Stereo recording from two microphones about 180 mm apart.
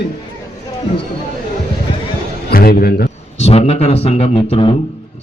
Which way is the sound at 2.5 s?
55° left (ahead or behind).